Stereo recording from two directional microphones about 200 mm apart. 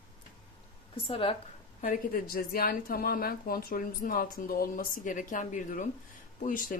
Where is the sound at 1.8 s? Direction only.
40° left (ahead or behind).